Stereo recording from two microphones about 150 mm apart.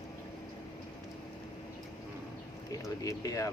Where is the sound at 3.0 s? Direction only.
25° left (ahead or behind).